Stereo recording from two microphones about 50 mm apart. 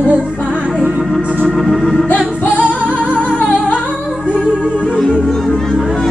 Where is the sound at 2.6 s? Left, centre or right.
Right.